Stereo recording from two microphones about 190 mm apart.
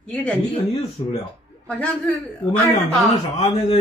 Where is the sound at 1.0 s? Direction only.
20° left (ahead or behind).